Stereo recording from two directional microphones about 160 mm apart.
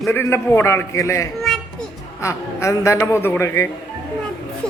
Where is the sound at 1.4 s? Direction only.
Centre (ahead or behind).